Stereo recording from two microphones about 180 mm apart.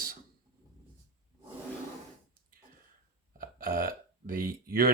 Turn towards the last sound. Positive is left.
turn(degrees=-55)  # may be behind; listen again after turning